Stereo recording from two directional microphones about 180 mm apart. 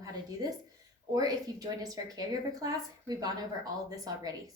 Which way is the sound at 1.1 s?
20° right (ahead or behind).